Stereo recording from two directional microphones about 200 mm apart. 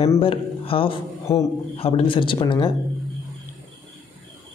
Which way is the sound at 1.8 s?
30° left (ahead or behind).